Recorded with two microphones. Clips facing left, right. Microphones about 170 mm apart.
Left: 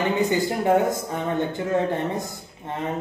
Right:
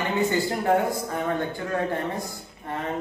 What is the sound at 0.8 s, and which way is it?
Speech, 20° left (ahead or behind).